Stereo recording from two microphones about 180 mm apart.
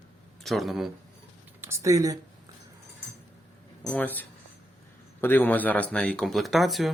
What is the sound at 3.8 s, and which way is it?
Speech, 5° left (ahead or behind).